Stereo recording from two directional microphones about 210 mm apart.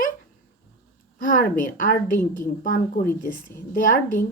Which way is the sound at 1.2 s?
40° left (ahead or behind).